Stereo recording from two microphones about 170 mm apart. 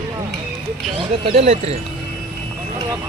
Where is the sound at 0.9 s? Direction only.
35° right (ahead or behind).